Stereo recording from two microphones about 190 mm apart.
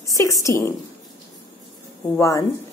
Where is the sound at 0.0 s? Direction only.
15° left (ahead or behind).